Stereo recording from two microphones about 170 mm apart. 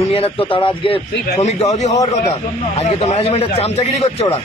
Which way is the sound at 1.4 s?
40° left (ahead or behind).